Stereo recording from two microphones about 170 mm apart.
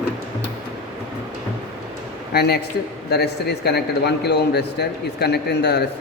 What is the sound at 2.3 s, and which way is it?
A man's voice, 70° left (ahead or behind).